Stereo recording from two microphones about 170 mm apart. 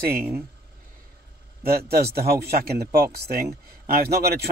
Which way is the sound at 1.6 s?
65° right (ahead or behind).